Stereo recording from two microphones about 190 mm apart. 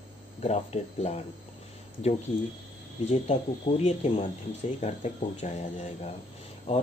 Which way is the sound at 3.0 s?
35° left (ahead or behind).